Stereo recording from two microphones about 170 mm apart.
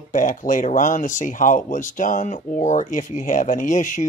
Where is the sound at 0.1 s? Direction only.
50° left (ahead or behind).